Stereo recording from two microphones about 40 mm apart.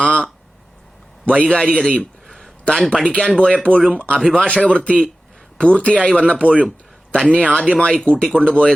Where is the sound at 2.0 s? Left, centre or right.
Centre.